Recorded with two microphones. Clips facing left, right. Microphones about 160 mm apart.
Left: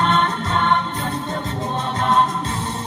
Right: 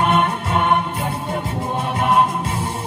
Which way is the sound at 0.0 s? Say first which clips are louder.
Right 1 dB; 10° right (ahead or behind).